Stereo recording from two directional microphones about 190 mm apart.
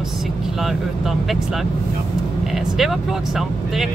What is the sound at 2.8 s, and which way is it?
Speech, centre (ahead or behind).